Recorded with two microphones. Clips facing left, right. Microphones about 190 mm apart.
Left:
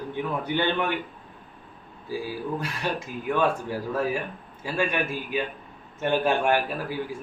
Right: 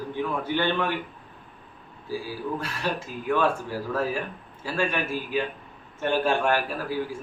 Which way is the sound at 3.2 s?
15° left (ahead or behind).